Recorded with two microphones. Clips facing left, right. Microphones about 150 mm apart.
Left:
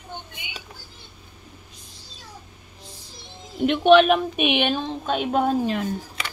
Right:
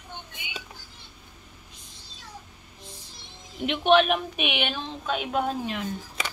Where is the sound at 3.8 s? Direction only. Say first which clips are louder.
Left 5 dB; 45° left (ahead or behind).